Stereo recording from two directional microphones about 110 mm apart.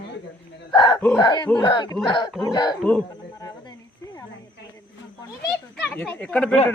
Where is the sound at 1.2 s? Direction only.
40° left (ahead or behind).